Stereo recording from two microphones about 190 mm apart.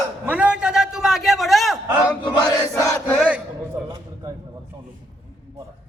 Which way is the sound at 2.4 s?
15° left (ahead or behind).